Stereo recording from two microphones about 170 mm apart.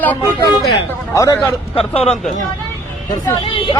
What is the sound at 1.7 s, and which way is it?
Speech, 35° left (ahead or behind).